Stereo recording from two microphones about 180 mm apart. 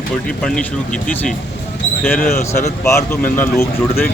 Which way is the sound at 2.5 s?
15° left (ahead or behind).